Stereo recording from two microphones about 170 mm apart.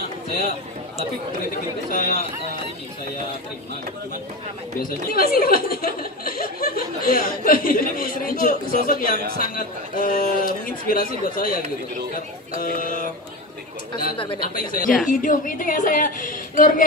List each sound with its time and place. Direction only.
1.9 s speech: 55° left (ahead or behind)
4.7 s a woman's voice: 60° left (ahead or behind)
14.1 s speech: 30° left (ahead or behind)
14.4 s a woman's voice: 55° left (ahead or behind)